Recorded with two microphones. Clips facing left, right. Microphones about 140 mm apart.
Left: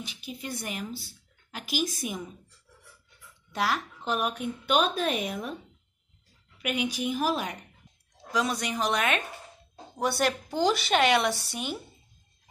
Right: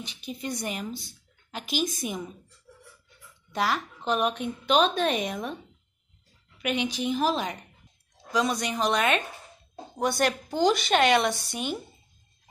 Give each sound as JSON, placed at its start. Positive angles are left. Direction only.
{"t": 0.0, "sound": "speech", "side_deg": 5}
{"t": 3.5, "sound": "a woman's voice", "side_deg": 5}
{"t": 6.6, "sound": "a woman's voice", "side_deg": 5}